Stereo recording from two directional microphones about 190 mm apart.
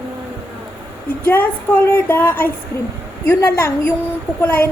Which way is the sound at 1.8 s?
10° left (ahead or behind).